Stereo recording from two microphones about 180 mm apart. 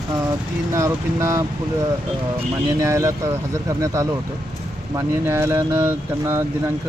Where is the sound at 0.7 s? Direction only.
15° right (ahead or behind).